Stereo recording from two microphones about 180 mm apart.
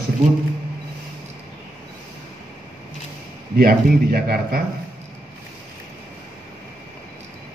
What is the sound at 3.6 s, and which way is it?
A man's voice, 55° right (ahead or behind).